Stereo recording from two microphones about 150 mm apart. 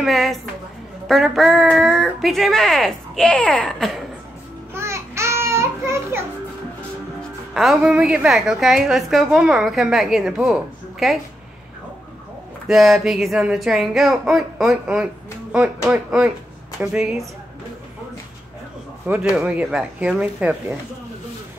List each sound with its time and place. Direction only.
0.0 s a woman's voice: centre (ahead or behind)
4.7 s a sound: 20° right (ahead or behind)
7.2 s a woman's voice: centre (ahead or behind)
12.6 s a woman's voice: centre (ahead or behind)
19.3 s speech: 10° right (ahead or behind)